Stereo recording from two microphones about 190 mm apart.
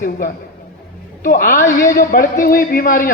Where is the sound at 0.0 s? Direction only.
50° left (ahead or behind).